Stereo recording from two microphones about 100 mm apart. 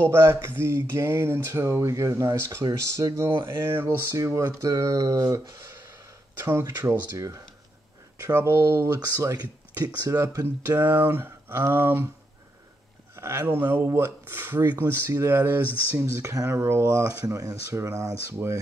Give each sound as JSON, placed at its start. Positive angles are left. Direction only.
{"t": 0.1, "sound": "speech", "side_deg": -25}
{"t": 3.4, "sound": "speech", "side_deg": -25}
{"t": 6.3, "sound": "speech", "side_deg": -25}
{"t": 13.1, "sound": "speech", "side_deg": -30}